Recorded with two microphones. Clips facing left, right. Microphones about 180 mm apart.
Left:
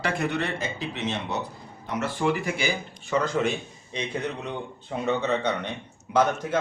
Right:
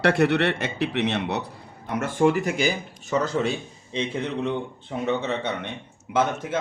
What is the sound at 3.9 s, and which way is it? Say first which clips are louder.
Speech: right 4 dB; 30° right (ahead or behind).